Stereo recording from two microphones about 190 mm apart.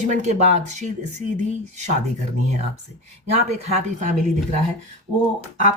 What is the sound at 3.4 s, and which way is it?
Speech, 35° right (ahead or behind).